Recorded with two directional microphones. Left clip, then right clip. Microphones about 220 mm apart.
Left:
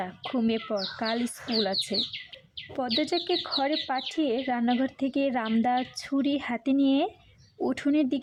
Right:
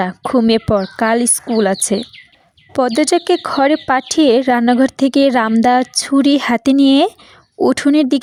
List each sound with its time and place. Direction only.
0.0 s speech: 40° right (ahead or behind)